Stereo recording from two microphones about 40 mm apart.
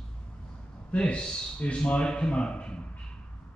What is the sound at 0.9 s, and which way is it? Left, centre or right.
A man's voice, left.